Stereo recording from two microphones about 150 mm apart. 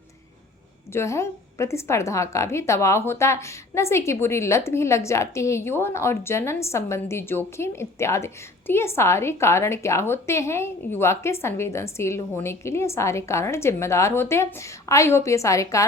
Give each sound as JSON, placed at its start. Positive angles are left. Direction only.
{"t": 0.9, "sound": "a woman's voice", "side_deg": 20}